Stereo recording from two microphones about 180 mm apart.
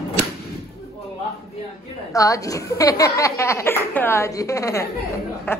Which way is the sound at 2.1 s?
20° left (ahead or behind).